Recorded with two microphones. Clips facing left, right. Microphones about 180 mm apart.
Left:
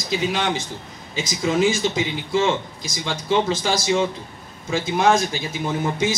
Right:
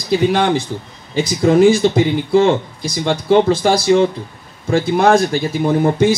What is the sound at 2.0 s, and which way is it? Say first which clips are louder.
Speech: right 9 dB; 45° right (ahead or behind).